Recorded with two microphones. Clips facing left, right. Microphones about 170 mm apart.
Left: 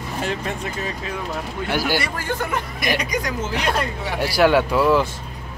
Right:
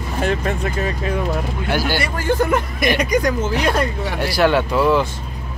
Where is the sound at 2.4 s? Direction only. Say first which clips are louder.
Right 7 dB; 45° right (ahead or behind).